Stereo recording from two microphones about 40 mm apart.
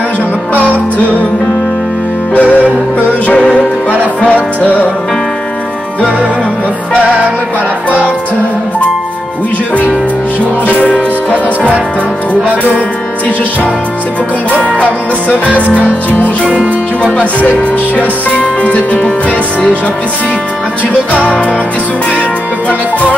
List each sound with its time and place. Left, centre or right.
2.3 s music: left
10.7 s music: left
14.6 s music: left
17.4 s music: left